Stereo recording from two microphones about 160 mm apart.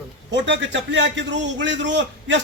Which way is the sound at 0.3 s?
90° right.